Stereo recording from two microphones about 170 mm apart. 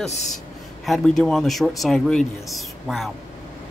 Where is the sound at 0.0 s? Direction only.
40° left (ahead or behind).